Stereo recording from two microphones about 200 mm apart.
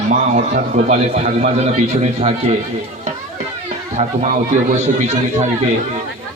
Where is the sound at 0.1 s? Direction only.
40° right (ahead or behind).